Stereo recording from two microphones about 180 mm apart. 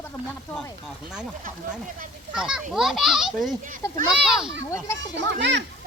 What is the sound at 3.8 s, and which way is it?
Speech, 15° left (ahead or behind).